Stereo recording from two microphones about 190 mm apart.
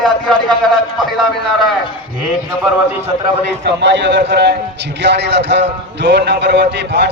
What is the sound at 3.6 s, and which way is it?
A man's voice, 65° right (ahead or behind).